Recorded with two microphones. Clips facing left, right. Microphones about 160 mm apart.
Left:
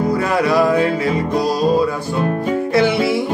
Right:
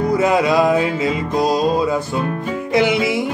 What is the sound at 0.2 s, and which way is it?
Music, 20° right (ahead or behind).